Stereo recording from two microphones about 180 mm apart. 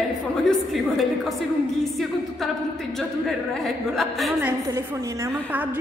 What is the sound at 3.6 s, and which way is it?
Speech, centre (ahead or behind).